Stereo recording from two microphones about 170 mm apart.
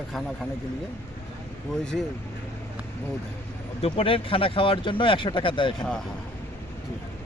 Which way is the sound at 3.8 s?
35° left (ahead or behind).